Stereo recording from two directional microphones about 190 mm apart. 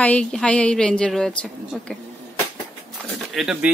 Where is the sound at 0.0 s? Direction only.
5° left (ahead or behind).